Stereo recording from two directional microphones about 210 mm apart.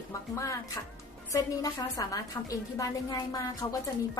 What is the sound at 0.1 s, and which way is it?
A woman's voice, 15° left (ahead or behind).